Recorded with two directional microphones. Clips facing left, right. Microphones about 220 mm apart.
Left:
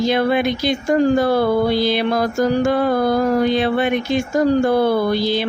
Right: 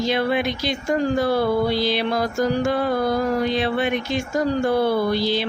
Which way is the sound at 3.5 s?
50° left (ahead or behind).